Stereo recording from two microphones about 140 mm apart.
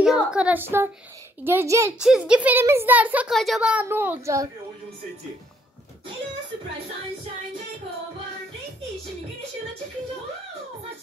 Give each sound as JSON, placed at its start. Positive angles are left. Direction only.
{"t": 0.0, "sound": "a woman's voice", "side_deg": -5}
{"t": 2.0, "sound": "a woman's voice", "side_deg": -5}